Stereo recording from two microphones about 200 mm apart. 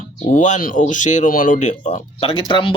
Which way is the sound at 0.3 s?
35° left (ahead or behind).